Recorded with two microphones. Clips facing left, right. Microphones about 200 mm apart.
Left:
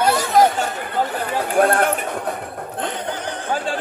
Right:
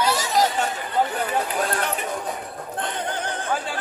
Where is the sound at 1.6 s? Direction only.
55° left (ahead or behind).